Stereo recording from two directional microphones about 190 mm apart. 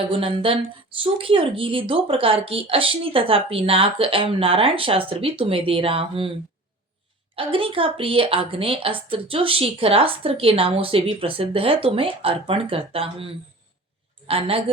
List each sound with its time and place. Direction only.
0.1 s speech: 30° right (ahead or behind)
7.3 s speech: 30° right (ahead or behind)